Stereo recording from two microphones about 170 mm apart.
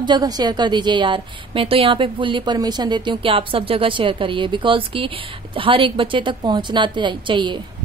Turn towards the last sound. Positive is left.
turn(degrees=-30)  # may be behind; listen again after turning